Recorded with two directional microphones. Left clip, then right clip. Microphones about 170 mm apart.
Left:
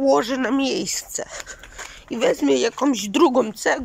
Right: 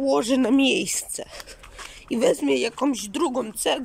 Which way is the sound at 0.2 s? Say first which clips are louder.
Right 1 dB; 20° right (ahead or behind).